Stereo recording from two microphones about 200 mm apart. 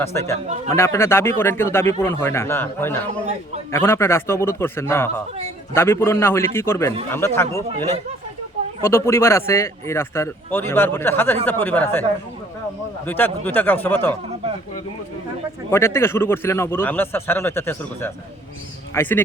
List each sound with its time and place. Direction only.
0.0 s speech: 15° left (ahead or behind)
0.4 s a man's voice: 35° right (ahead or behind)
0.8 s speech: 15° left (ahead or behind)
8.8 s speech: 15° left (ahead or behind)
13.1 s speech: 10° left (ahead or behind)
15.7 s speech: 10° left (ahead or behind)